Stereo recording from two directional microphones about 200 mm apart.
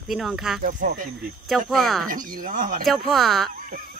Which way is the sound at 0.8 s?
40° right (ahead or behind).